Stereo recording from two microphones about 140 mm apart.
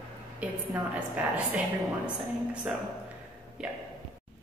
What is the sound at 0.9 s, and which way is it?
Speech, 10° right (ahead or behind).